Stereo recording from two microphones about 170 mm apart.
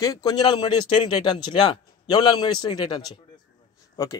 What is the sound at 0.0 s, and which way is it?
Speech, 20° left (ahead or behind).